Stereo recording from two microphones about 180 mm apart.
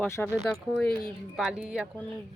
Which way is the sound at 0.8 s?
Centre (ahead or behind).